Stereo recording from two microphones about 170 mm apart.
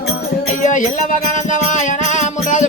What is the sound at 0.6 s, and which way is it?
Music, 50° left (ahead or behind).